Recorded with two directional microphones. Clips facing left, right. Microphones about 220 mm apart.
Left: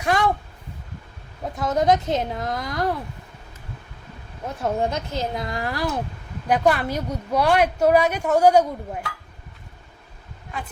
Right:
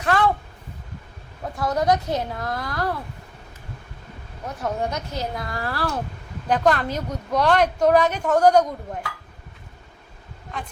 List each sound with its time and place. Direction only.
0.0 s a sound: 15° left (ahead or behind)
1.5 s a woman's voice: 20° left (ahead or behind)
4.6 s a woman's voice: 25° left (ahead or behind); by 9.0 s 10° left (ahead or behind)